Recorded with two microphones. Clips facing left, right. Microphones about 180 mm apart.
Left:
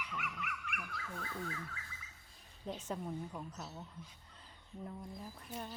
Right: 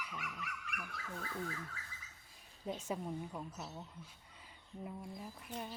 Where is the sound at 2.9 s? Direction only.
5° right (ahead or behind).